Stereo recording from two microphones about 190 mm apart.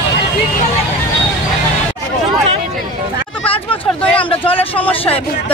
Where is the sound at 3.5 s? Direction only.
30° left (ahead or behind).